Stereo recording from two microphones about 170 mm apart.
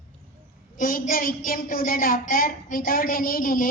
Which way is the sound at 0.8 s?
55° left (ahead or behind).